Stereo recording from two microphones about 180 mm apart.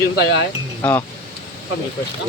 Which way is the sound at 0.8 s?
10° left (ahead or behind).